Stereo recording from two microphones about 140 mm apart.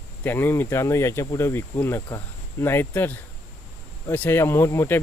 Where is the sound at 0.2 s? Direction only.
15° left (ahead or behind).